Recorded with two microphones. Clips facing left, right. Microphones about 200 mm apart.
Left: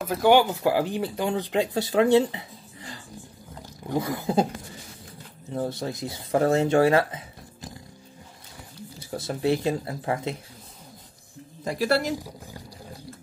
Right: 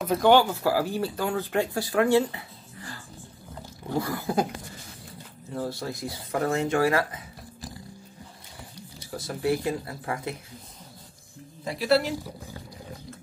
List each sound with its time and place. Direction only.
0.0 s speech: centre (ahead or behind)
0.3 s speech: 15° left (ahead or behind)
5.5 s speech: 20° left (ahead or behind)
9.1 s speech: 25° left (ahead or behind)
12.2 s a sound: 10° left (ahead or behind)